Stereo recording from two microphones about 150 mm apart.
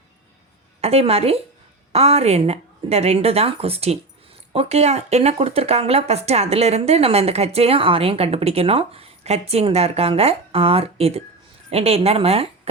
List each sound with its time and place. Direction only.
0.8 s a woman's voice: 45° right (ahead or behind)